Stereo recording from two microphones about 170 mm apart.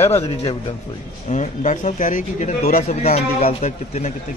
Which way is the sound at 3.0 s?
40° left (ahead or behind).